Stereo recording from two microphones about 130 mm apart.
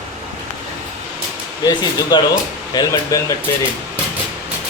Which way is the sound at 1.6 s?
30° left (ahead or behind).